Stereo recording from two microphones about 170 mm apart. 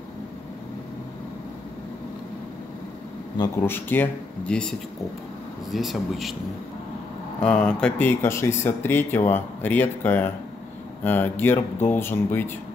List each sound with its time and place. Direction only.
3.3 s a man's voice: 15° left (ahead or behind)
7.4 s speech: 5° left (ahead or behind)